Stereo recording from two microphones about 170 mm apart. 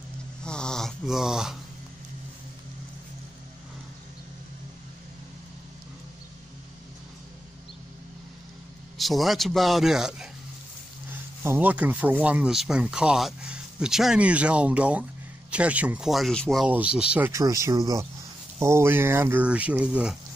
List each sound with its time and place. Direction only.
0.4 s dog: 5° left (ahead or behind)
8.9 s a man's voice: centre (ahead or behind)
17.3 s speech: 20° right (ahead or behind)